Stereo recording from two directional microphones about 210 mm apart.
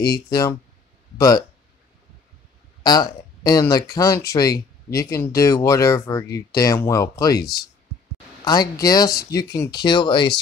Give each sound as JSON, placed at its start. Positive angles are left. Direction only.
{"t": 0.0, "sound": "speech", "side_deg": 20}
{"t": 2.8, "sound": "speech", "side_deg": 20}